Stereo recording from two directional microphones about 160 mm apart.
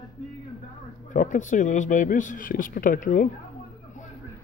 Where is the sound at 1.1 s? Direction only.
50° left (ahead or behind).